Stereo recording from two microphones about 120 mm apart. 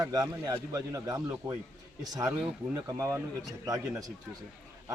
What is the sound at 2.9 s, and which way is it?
A man's voice, 25° right (ahead or behind).